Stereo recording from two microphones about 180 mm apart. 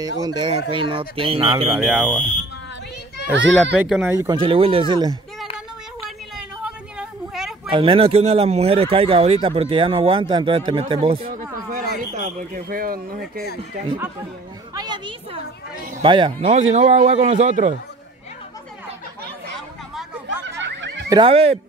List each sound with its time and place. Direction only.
0.2 s speech: 30° right (ahead or behind)
1.7 s speech: 5° right (ahead or behind)
3.3 s a child's voice: 90° right
3.7 s speech: 10° right (ahead or behind)
4.3 s speech: 30° right (ahead or behind)
6.0 s a sound: 5° right (ahead or behind)
7.7 s speech: 30° right (ahead or behind)
12.2 s speech: 50° right (ahead or behind)
14.7 s speech: 20° right (ahead or behind)
16.4 s speech: 40° right (ahead or behind)
20.6 s snicker: 80° right
21.1 s speech: 30° right (ahead or behind)